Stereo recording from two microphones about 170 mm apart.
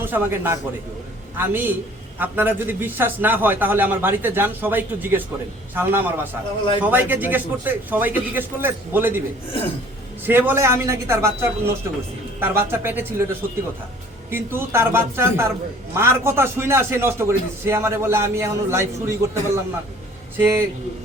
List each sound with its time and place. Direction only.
0.0 s a man's voice: 10° right (ahead or behind)
10.2 s a man's voice: 10° right (ahead or behind)
12.4 s a man's voice: 15° right (ahead or behind)
14.3 s a man's voice: 15° right (ahead or behind)